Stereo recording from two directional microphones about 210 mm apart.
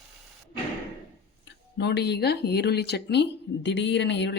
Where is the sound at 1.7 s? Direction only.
50° left (ahead or behind).